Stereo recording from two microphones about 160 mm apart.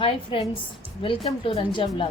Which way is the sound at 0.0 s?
35° left (ahead or behind).